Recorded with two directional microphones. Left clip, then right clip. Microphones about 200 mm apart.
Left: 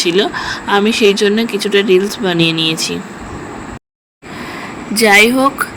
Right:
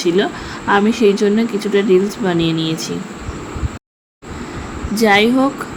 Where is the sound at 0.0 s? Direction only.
30° left (ahead or behind).